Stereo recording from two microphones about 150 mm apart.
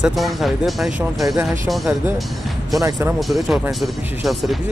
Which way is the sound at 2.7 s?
20° right (ahead or behind).